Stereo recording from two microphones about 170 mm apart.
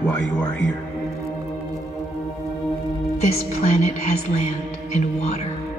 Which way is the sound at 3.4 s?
40° left (ahead or behind).